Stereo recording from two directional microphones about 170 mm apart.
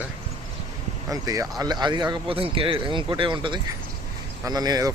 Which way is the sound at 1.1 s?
20° right (ahead or behind).